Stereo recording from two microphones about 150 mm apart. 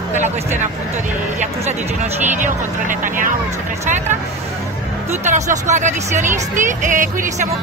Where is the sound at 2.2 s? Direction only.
60° right (ahead or behind).